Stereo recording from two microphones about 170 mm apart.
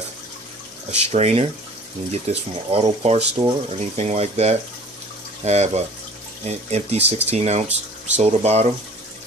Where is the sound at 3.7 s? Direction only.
40° right (ahead or behind).